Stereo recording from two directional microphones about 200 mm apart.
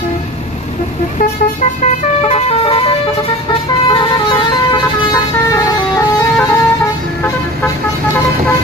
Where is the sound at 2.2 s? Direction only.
30° left (ahead or behind).